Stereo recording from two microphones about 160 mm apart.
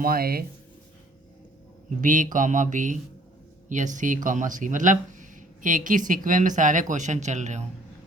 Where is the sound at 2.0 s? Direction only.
55° right (ahead or behind).